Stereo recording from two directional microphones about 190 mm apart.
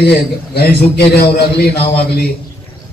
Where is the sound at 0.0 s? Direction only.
60° left (ahead or behind).